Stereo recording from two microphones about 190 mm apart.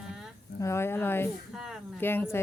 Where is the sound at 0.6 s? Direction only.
15° left (ahead or behind).